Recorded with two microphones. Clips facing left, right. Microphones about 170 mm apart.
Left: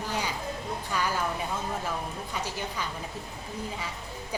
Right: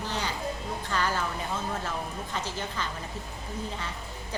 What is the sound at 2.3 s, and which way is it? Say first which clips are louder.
Speech: even; 10° left (ahead or behind).